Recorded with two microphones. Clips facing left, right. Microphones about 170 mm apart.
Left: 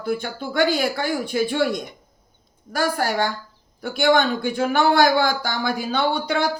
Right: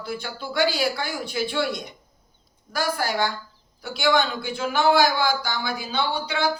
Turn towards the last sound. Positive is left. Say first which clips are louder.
# left 5 dB
turn(degrees=50)  # may be behind; listen again after turning